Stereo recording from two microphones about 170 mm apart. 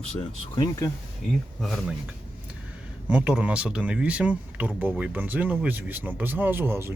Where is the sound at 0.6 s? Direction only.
20° left (ahead or behind).